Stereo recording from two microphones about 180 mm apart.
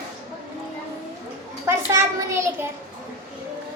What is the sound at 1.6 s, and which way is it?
Speech, 15° right (ahead or behind).